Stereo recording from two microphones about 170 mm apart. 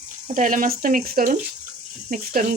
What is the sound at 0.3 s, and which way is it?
Speech, 50° right (ahead or behind).